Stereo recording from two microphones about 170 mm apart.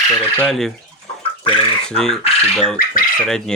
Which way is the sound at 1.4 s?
30° left (ahead or behind).